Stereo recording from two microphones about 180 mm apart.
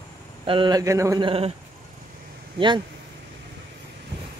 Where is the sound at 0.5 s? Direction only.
25° right (ahead or behind).